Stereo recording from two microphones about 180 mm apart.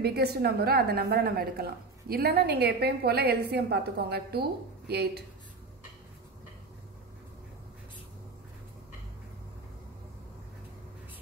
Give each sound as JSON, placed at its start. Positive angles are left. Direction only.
{"t": 0.0, "sound": "a woman's voice", "side_deg": -60}